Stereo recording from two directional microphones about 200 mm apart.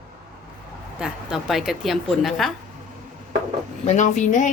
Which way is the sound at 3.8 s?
35° left (ahead or behind).